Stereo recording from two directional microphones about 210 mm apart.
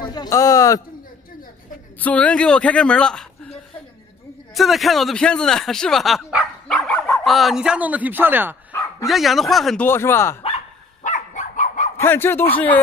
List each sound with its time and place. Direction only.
0.0 s speech: 20° left (ahead or behind)
2.0 s a man's voice: 5° left (ahead or behind)
4.6 s speech: centre (ahead or behind)
11.0 s dog: 35° left (ahead or behind)
12.0 s speech: 10° left (ahead or behind)